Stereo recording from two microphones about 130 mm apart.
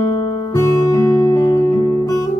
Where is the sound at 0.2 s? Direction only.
35° left (ahead or behind).